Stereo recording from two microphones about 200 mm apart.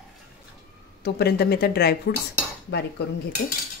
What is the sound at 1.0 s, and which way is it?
Speech, 55° left (ahead or behind).